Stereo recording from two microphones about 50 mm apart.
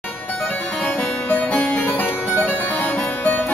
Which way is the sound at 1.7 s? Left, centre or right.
Left.